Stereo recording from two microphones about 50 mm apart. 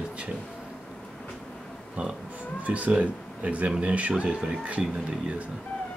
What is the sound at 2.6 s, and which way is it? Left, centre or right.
Speech, right.